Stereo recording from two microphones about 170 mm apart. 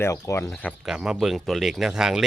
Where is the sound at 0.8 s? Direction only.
5° right (ahead or behind).